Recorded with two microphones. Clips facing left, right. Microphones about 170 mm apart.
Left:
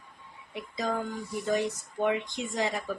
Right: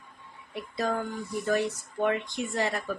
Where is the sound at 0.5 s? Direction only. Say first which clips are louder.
Right 2 dB; 15° left (ahead or behind).